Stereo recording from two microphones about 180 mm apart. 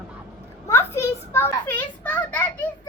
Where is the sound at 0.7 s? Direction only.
15° left (ahead or behind).